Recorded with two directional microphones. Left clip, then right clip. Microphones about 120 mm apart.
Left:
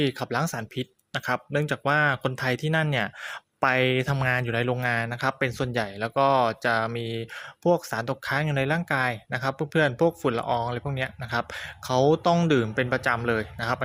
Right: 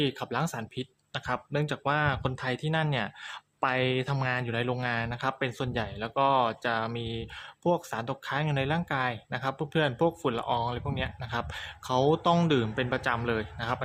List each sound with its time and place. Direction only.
0.0 s speech: 30° left (ahead or behind)